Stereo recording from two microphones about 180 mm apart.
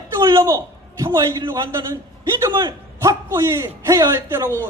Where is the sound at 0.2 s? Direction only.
20° right (ahead or behind).